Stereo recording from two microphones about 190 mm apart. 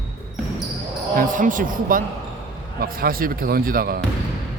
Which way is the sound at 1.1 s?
45° right (ahead or behind).